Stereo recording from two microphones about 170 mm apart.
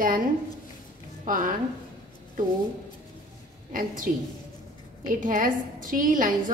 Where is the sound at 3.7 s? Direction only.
50° right (ahead or behind).